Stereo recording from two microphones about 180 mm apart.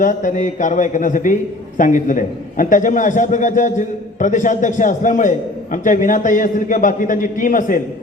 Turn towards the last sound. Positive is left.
turn(degrees=50)  # may be behind; listen again after turning